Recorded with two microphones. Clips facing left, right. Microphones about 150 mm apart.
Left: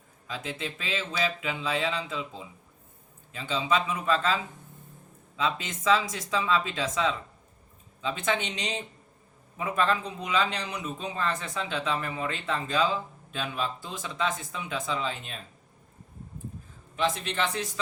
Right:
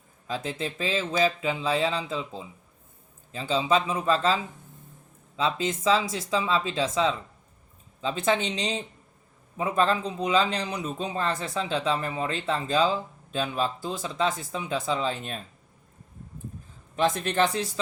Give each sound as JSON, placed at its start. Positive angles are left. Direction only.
{"t": 0.3, "sound": "a man's voice", "side_deg": -35}
{"t": 5.4, "sound": "a man's voice", "side_deg": -35}
{"t": 17.0, "sound": "speech", "side_deg": -45}